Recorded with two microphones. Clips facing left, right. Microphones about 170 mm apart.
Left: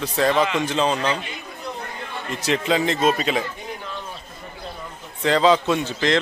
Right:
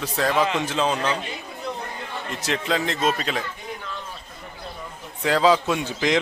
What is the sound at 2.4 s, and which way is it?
A man's voice, centre (ahead or behind).